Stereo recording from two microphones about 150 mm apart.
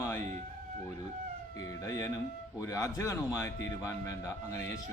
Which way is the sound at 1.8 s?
20° left (ahead or behind).